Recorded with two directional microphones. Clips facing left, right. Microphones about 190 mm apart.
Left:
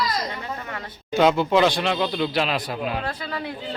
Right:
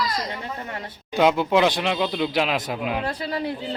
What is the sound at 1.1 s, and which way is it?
Speech, 10° right (ahead or behind).